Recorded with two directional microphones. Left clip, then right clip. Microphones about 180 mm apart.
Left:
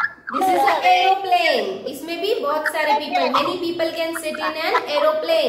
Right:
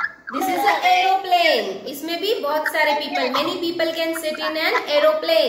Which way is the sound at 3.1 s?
30° left (ahead or behind).